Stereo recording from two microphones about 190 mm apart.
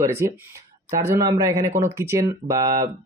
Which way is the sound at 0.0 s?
15° right (ahead or behind).